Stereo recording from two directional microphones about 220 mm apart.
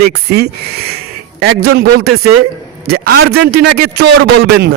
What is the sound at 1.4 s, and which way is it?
A man's voice, 45° right (ahead or behind).